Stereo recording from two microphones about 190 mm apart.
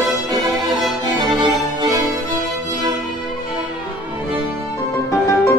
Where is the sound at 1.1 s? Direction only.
25° right (ahead or behind).